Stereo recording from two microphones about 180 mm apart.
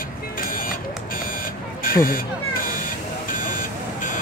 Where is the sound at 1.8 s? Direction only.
50° left (ahead or behind).